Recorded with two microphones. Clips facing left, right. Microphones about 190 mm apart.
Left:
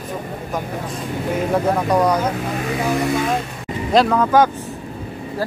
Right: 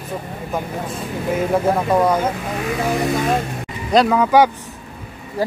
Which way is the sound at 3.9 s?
Centre (ahead or behind).